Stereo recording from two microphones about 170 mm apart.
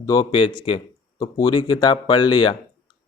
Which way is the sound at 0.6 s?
35° left (ahead or behind).